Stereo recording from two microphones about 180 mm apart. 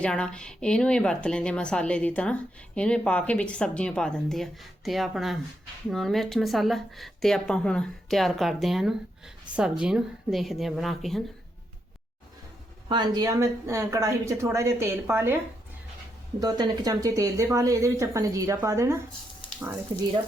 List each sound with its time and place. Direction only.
0.0 s speech: 5° left (ahead or behind)
12.9 s speech: 25° right (ahead or behind)
16.4 s speech: 20° right (ahead or behind)